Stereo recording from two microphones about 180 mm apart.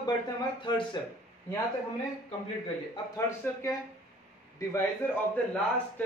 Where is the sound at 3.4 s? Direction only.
15° left (ahead or behind).